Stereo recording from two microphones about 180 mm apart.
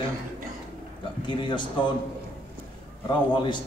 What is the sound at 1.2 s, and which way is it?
Speech, 25° left (ahead or behind).